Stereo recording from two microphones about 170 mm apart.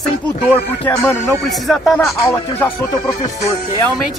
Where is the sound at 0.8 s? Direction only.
10° left (ahead or behind).